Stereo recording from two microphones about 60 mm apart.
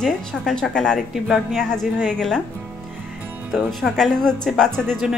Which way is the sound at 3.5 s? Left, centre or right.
Centre.